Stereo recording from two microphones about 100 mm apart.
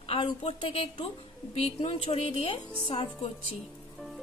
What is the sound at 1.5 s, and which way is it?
A woman's voice, 90° left.